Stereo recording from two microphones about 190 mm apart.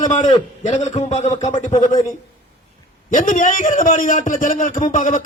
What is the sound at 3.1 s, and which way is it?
A man's voice, 45° left (ahead or behind).